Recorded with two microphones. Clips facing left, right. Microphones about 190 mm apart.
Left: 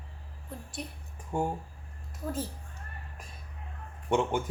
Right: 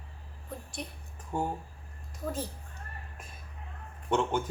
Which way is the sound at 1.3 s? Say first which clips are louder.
Left 2 dB; 15° left (ahead or behind).